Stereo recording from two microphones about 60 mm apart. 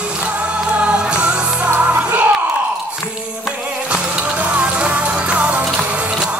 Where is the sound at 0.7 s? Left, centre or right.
Right.